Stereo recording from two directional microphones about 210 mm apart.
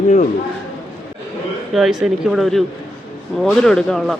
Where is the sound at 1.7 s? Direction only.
Centre (ahead or behind).